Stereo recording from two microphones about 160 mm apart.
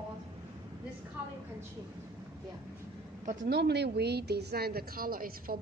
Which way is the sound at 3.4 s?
90° right.